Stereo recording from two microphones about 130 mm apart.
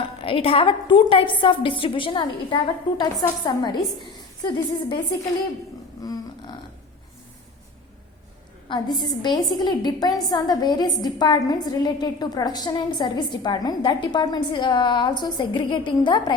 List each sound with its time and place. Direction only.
0.2 s a woman's voice: 45° left (ahead or behind)
6.0 s a sound: 30° left (ahead or behind)
8.7 s a woman's voice: 35° left (ahead or behind)